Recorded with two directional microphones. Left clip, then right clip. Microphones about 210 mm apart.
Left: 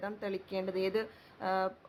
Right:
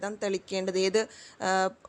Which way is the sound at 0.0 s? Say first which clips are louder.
Right 7 dB; 30° right (ahead or behind).